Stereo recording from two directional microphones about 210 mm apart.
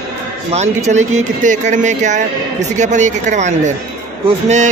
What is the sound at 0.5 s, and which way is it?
Speech, 35° right (ahead or behind).